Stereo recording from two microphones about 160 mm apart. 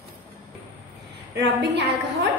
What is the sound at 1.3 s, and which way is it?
Speech, 90° right.